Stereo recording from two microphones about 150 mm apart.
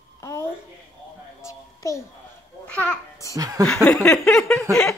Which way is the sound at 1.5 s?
20° left (ahead or behind).